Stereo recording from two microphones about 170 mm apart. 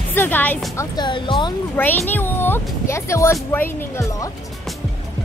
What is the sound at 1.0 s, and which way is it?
Music, 25° left (ahead or behind).